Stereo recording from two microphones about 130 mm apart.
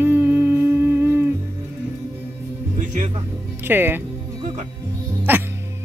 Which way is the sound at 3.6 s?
15° right (ahead or behind).